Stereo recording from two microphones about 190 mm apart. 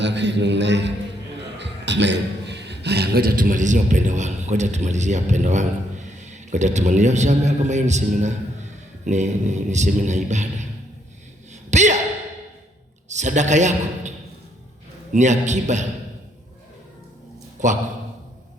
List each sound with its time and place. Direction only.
0.0 s a man's voice: 65° right (ahead or behind); by 10.7 s 40° right (ahead or behind)
11.7 s speech: 40° right (ahead or behind)
13.1 s a man's voice: 40° right (ahead or behind)
15.1 s a man's voice: 40° right (ahead or behind)
17.6 s a man's voice: 40° right (ahead or behind)